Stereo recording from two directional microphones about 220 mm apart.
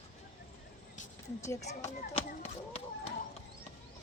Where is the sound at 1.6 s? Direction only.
30° left (ahead or behind).